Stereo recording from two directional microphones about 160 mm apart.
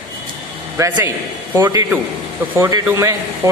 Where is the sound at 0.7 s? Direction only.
15° right (ahead or behind).